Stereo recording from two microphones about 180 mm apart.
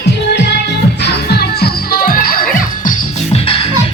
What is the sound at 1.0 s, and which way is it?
Music, 60° left (ahead or behind).